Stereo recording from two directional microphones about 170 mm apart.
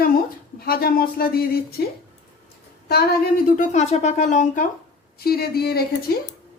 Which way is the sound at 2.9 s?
60° left (ahead or behind).